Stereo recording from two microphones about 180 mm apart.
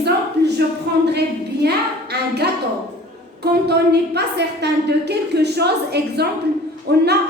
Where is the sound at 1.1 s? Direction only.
65° right (ahead or behind).